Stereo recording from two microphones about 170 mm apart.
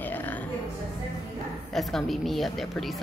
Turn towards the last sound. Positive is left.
turn(degrees=0)  # may be behind; listen again after turning